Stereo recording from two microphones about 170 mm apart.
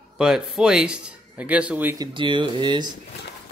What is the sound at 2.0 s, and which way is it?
Speech, 30° right (ahead or behind).